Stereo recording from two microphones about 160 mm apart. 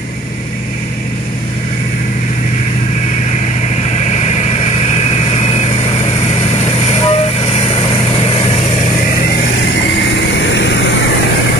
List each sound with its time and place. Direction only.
3.9 s vehicle: 45° left (ahead or behind)